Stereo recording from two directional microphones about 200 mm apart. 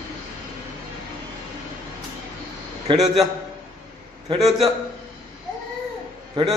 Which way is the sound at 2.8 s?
30° right (ahead or behind).